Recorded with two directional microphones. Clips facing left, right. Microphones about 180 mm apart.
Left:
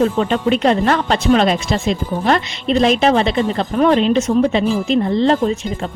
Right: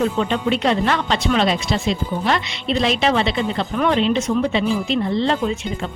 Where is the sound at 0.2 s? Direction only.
50° left (ahead or behind).